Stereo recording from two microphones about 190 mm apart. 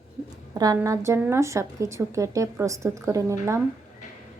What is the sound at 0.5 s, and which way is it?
A woman's voice, 20° right (ahead or behind).